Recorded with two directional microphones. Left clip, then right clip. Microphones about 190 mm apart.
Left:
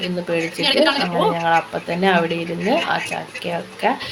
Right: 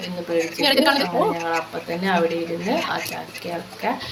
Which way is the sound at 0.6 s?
55° right (ahead or behind).